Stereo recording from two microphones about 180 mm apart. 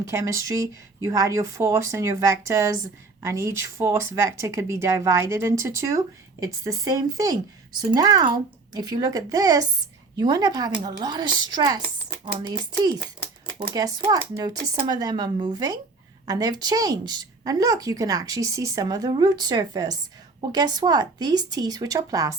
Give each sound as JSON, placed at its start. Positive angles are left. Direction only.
{"t": 0.1, "sound": "a woman's voice", "side_deg": -15}